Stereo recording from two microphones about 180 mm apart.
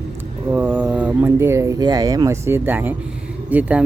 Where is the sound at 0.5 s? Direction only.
10° right (ahead or behind).